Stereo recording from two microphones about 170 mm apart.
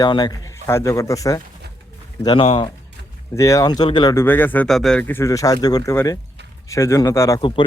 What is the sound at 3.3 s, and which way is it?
Speech, 20° left (ahead or behind).